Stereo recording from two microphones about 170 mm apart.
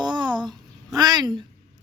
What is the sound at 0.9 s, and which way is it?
Speech, 25° right (ahead or behind).